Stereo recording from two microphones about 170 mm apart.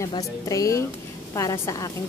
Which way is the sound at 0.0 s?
20° left (ahead or behind).